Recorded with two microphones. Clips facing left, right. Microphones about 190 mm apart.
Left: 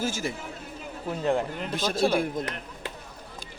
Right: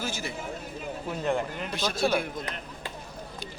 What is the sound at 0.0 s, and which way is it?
Speech, 45° left (ahead or behind).